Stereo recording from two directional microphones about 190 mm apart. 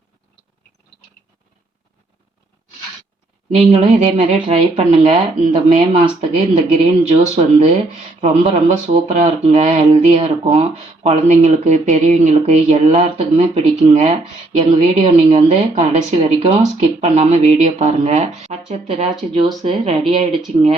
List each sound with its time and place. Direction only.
3.6 s speech: 35° right (ahead or behind)
19.3 s speech: 25° right (ahead or behind)